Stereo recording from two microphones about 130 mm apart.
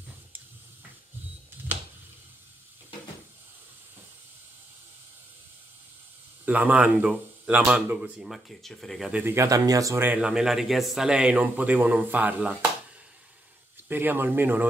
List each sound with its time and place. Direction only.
6.4 s speech: 10° right (ahead or behind)
9.1 s speech: 20° right (ahead or behind)
10.0 s speech: 5° right (ahead or behind)
13.8 s speech: 15° right (ahead or behind)